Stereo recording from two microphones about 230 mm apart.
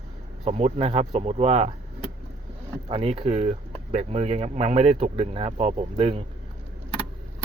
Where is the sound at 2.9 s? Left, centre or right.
Right.